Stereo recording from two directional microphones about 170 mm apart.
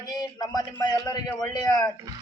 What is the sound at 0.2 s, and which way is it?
A man's voice, 25° left (ahead or behind).